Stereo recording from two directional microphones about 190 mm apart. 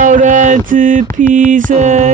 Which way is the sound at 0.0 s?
40° right (ahead or behind).